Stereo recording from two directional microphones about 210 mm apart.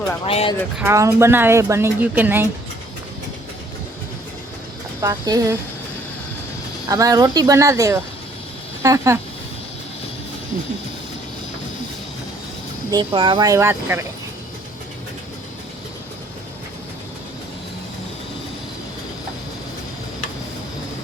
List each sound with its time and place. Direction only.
0.3 s speech: 25° left (ahead or behind)
0.8 s a woman's voice: 15° right (ahead or behind)
4.9 s a woman's voice: 15° right (ahead or behind)
6.8 s a woman's voice: 15° right (ahead or behind)
12.9 s a woman's voice: 20° right (ahead or behind)